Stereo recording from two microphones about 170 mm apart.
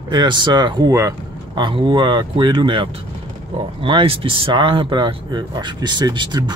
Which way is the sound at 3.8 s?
30° right (ahead or behind).